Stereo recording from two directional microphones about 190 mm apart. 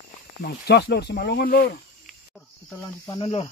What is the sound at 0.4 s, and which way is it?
Speech, 55° left (ahead or behind).